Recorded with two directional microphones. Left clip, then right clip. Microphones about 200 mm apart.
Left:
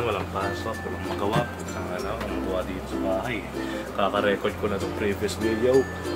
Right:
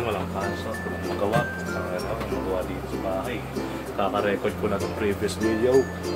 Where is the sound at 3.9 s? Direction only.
10° left (ahead or behind).